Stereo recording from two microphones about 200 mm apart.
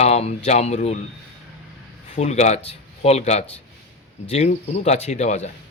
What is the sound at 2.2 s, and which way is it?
Speech, 35° left (ahead or behind).